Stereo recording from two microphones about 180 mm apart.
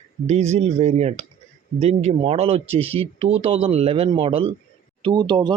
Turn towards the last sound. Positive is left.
turn(degrees=-25)  # may be behind; listen again after turning